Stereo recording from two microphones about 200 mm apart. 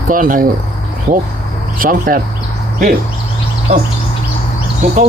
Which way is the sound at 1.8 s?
45° right (ahead or behind).